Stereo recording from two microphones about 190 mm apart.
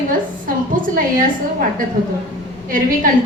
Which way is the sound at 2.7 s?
45° right (ahead or behind).